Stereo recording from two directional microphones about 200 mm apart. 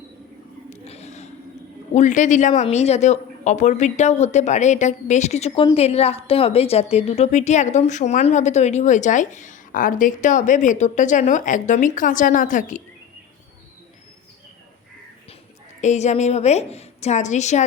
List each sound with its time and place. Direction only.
0.7 s a sound: 35° left (ahead or behind)
1.9 s speech: 35° left (ahead or behind)
15.8 s speech: 35° left (ahead or behind)